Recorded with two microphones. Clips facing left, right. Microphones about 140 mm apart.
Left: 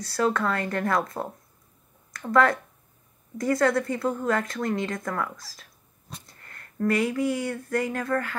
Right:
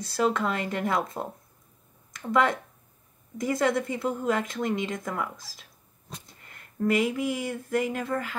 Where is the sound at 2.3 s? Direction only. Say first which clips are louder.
Left 3 dB; 20° right (ahead or behind).